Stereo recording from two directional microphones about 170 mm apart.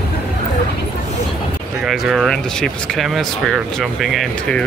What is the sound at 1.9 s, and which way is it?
Speech, centre (ahead or behind).